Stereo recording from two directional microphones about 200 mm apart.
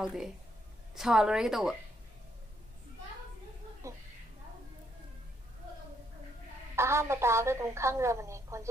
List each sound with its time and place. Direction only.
0.0 s a woman's voice: 5° right (ahead or behind)
3.8 s a sound: 15° right (ahead or behind)
6.7 s a woman's voice: 15° right (ahead or behind)